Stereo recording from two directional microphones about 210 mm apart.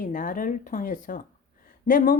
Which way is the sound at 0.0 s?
40° left (ahead or behind).